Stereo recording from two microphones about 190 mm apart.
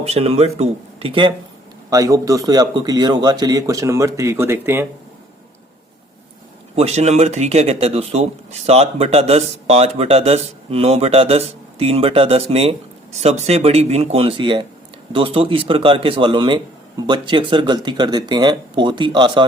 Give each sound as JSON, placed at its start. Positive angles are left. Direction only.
{"t": 0.0, "sound": "speech", "side_deg": -35}
{"t": 1.9, "sound": "a man's voice", "side_deg": -15}
{"t": 6.7, "sound": "speech", "side_deg": -35}